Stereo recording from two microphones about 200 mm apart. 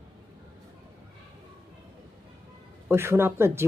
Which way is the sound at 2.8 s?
10° right (ahead or behind).